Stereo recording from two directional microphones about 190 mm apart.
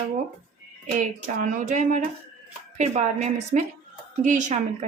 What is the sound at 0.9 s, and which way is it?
A woman's voice, 40° right (ahead or behind).